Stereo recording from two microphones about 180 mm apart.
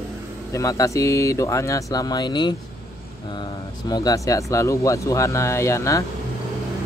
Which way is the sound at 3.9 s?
20° left (ahead or behind).